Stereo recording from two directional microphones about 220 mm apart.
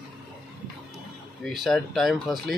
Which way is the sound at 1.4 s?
Centre (ahead or behind).